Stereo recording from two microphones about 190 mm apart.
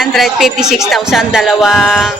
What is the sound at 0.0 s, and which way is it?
Speech, centre (ahead or behind).